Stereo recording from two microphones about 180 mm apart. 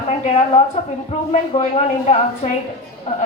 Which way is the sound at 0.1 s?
35° left (ahead or behind).